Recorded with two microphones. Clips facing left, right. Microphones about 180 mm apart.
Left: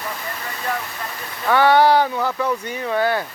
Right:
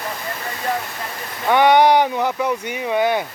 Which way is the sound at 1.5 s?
15° right (ahead or behind).